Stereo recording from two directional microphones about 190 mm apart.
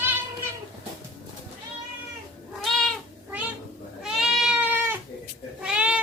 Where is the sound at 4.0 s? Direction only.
Centre (ahead or behind).